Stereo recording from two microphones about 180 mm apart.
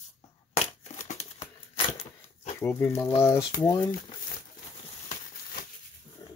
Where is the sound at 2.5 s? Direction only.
15° left (ahead or behind).